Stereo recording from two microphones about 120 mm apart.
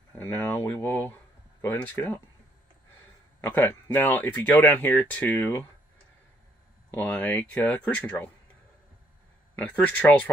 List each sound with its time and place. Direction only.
0.2 s speech: 15° left (ahead or behind)
3.3 s speech: 15° left (ahead or behind)
6.9 s speech: 15° left (ahead or behind)
9.6 s speech: 15° left (ahead or behind)